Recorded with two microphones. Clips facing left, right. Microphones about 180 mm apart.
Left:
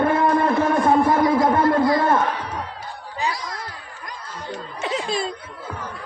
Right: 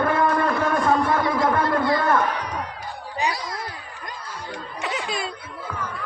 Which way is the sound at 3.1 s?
20° right (ahead or behind).